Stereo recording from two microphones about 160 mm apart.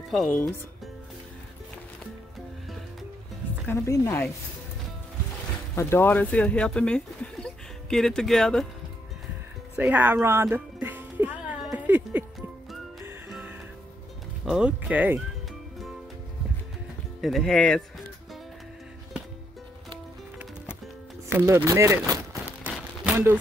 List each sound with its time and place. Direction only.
0.1 s speech: centre (ahead or behind)
3.6 s speech: 20° left (ahead or behind)
5.8 s speech: 15° left (ahead or behind)
9.8 s music: 10° right (ahead or behind)
13.3 s music: 5° right (ahead or behind)
14.4 s speech: 5° right (ahead or behind)
17.2 s speech: centre (ahead or behind)
21.3 s speech: 15° right (ahead or behind)
23.0 s a sound: 15° right (ahead or behind)